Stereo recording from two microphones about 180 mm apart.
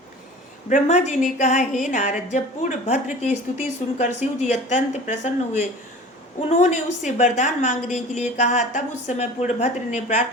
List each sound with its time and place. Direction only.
0.7 s a woman's voice: 40° left (ahead or behind)